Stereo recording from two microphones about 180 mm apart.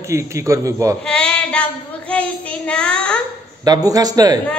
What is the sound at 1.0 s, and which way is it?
Child singing, 5° left (ahead or behind).